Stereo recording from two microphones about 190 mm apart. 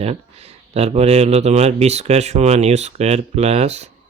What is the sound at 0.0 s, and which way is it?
Speech, 35° right (ahead or behind).